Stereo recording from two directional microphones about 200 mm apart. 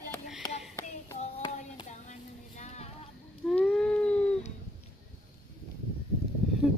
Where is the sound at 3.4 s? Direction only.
Centre (ahead or behind).